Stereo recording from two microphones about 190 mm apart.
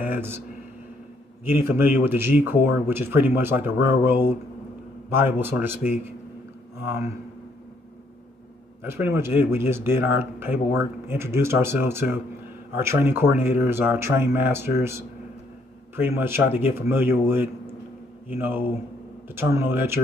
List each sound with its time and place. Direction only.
0.0 s a sound: 10° right (ahead or behind)
1.4 s speech: 10° right (ahead or behind)
8.8 s speech: 15° right (ahead or behind)